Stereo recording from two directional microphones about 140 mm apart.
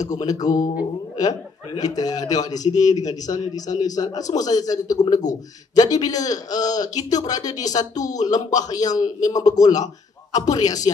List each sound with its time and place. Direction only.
0.2 s a man's voice: 25° left (ahead or behind)